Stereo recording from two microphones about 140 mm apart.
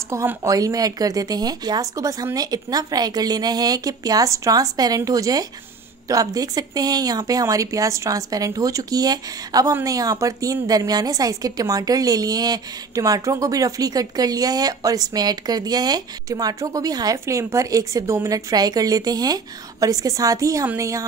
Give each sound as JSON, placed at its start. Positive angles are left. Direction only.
{"t": 0.1, "sound": "a woman's voice", "side_deg": -20}